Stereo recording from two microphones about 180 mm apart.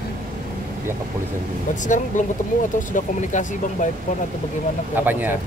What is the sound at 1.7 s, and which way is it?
Speech, 45° left (ahead or behind).